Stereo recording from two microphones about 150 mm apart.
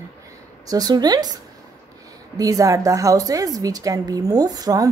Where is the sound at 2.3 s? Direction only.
25° right (ahead or behind).